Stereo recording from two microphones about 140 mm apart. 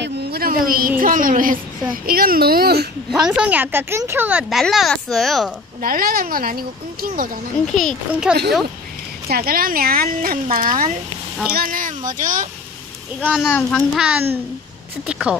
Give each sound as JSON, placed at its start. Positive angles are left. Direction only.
{"t": 0.4, "sound": "a woman's voice", "side_deg": -90}
{"t": 2.0, "sound": "speech", "side_deg": -90}
{"t": 3.1, "sound": "a woman's voice", "side_deg": -5}
{"t": 5.8, "sound": "speech", "side_deg": -90}
{"t": 7.6, "sound": "a woman's voice", "side_deg": 0}
{"t": 9.3, "sound": "speech", "side_deg": -90}
{"t": 11.5, "sound": "speech", "side_deg": -90}
{"t": 13.2, "sound": "a woman's voice", "side_deg": -5}
{"t": 13.5, "sound": "a child's voice", "side_deg": 15}
{"t": 13.9, "sound": "a child's voice", "side_deg": -5}